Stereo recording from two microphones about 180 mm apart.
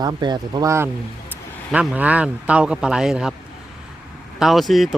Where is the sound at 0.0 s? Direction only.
25° right (ahead or behind).